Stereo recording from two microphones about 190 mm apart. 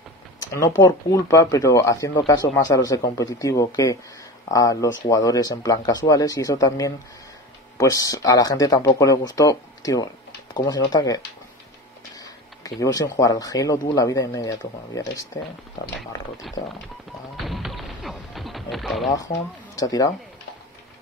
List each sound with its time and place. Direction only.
0.5 s speech: 20° left (ahead or behind)
12.2 s a sound: 20° left (ahead or behind)
13.2 s speech: 20° left (ahead or behind)
16.5 s speech: centre (ahead or behind)
17.5 s a sound: centre (ahead or behind)
19.7 s speech: 20° left (ahead or behind)